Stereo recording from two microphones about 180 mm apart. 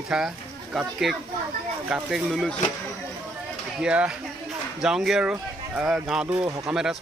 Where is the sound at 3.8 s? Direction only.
5° right (ahead or behind).